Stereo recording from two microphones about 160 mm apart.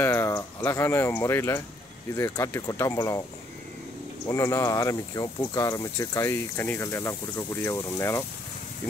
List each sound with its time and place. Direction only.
0.0 s speech: 15° left (ahead or behind)
4.3 s speech: 20° left (ahead or behind)